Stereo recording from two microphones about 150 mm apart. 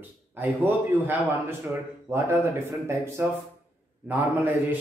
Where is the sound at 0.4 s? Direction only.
15° right (ahead or behind).